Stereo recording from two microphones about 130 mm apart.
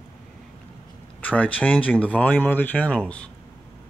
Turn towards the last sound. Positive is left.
turn(degrees=10)  # may be behind; listen again after turning